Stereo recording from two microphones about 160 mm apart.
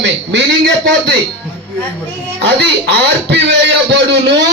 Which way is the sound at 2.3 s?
90° right.